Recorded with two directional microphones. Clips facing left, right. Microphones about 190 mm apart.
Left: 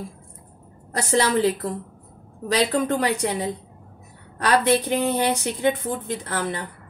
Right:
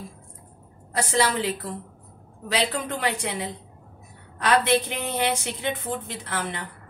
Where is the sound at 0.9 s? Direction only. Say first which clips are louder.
Left 3 dB; 45° left (ahead or behind).